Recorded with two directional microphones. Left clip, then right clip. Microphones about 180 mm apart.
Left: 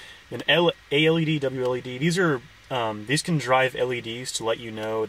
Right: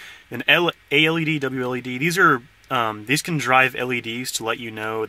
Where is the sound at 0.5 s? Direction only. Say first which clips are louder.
Right 3 dB; 10° right (ahead or behind).